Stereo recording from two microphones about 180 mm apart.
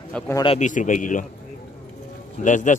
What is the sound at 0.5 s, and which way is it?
Speech, 45° left (ahead or behind).